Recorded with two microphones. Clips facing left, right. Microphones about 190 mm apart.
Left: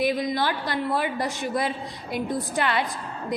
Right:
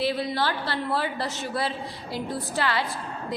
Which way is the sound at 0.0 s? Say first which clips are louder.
Left 2 dB; 15° left (ahead or behind).